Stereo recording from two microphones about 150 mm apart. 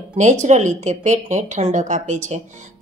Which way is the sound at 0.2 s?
55° right (ahead or behind).